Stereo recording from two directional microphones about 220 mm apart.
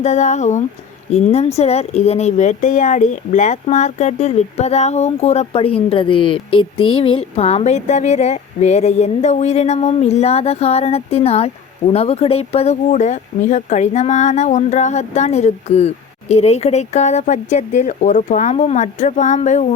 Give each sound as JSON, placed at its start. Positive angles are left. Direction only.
{"t": 0.0, "sound": "a woman's voice", "side_deg": 30}